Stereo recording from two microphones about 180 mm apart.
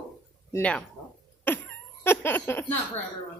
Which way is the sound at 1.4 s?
10° left (ahead or behind).